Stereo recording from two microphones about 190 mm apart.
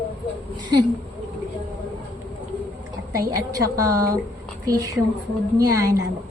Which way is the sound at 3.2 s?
20° right (ahead or behind).